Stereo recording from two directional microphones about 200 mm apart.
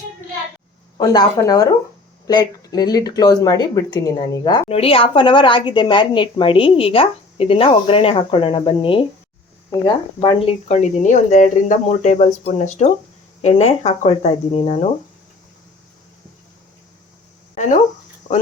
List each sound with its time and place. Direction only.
0.9 s speech: 20° left (ahead or behind)
18.3 s cricket: 35° left (ahead or behind)